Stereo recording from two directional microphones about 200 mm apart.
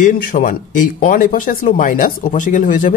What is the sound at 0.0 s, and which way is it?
Speech, 40° left (ahead or behind).